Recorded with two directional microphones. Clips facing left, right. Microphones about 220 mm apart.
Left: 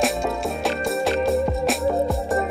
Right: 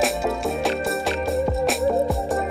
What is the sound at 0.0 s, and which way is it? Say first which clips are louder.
Music: even; centre (ahead or behind).